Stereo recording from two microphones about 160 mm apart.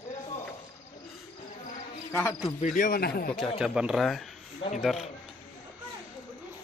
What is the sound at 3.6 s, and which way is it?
Speech, 5° right (ahead or behind).